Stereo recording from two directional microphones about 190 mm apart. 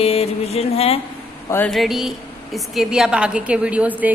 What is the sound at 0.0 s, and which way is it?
Music, 30° left (ahead or behind).